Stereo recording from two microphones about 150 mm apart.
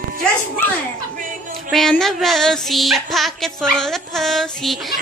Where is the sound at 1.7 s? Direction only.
Centre (ahead or behind).